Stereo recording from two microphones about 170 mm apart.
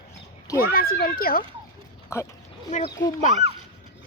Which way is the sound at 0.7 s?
60° left (ahead or behind).